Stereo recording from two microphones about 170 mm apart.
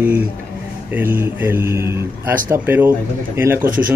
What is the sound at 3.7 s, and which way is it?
Speech, 55° right (ahead or behind).